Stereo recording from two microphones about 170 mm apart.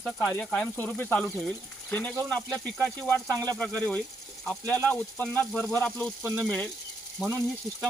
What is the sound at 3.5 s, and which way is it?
Speech, 5° left (ahead or behind).